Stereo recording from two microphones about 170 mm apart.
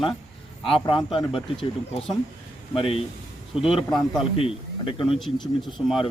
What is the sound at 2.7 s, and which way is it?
Speech, 30° left (ahead or behind).